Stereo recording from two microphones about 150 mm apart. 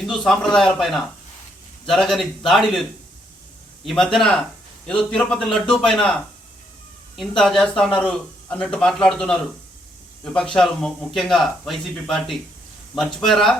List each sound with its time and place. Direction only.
0.0 s speech: 5° left (ahead or behind)
3.8 s speech: 5° left (ahead or behind)
7.2 s speech: 5° left (ahead or behind)